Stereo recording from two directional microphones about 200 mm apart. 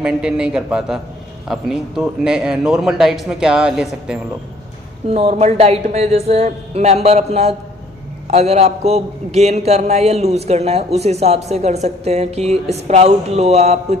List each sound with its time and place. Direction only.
0.0 s a man's voice: 5° right (ahead or behind)
5.1 s a man's voice: 30° right (ahead or behind)